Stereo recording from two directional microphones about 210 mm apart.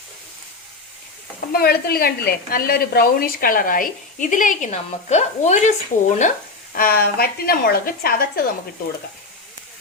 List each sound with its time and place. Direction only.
1.5 s a woman's voice: 45° left (ahead or behind)
6.7 s a woman's voice: 45° left (ahead or behind)